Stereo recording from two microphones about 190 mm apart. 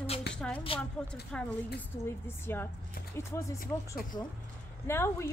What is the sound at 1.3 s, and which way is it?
A woman's voice, 5° left (ahead or behind).